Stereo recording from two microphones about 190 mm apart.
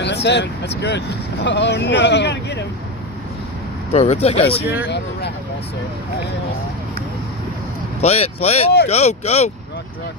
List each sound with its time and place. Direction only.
0.0 s speech: 65° left (ahead or behind)
3.9 s speech: 35° left (ahead or behind)
8.0 s speech: 35° left (ahead or behind)